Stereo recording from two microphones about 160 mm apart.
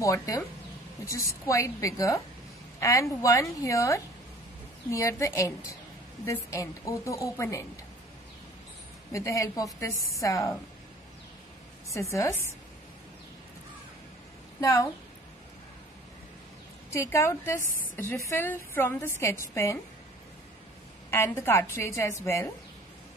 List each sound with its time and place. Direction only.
0.0 s a woman's voice: 20° left (ahead or behind)
9.1 s a woman's voice: 20° left (ahead or behind)
11.9 s a woman's voice: 20° left (ahead or behind)
14.6 s a woman's voice: 20° left (ahead or behind)
16.9 s a woman's voice: 15° left (ahead or behind)
21.1 s a woman's voice: 15° left (ahead or behind)